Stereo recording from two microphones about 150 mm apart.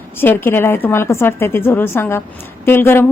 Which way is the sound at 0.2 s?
15° left (ahead or behind).